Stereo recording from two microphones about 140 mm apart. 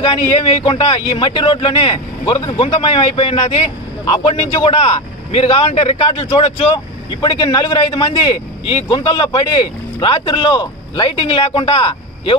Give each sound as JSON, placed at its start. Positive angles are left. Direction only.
{"t": 0.0, "sound": "speech", "side_deg": 40}